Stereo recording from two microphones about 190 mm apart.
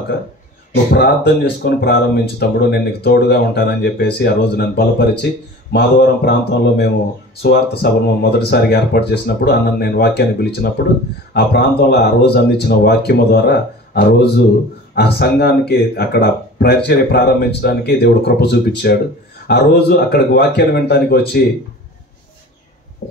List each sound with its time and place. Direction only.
0.9 s speech: 60° left (ahead or behind)